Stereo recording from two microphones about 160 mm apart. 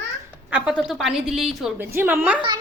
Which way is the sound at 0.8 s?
5° right (ahead or behind).